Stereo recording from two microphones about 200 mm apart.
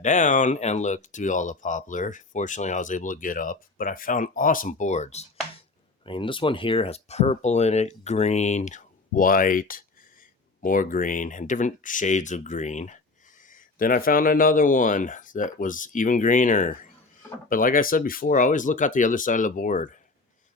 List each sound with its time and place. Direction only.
0.0 s speech: 40° left (ahead or behind)